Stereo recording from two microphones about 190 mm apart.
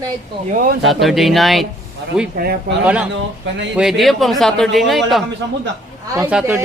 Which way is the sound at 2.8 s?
5° right (ahead or behind).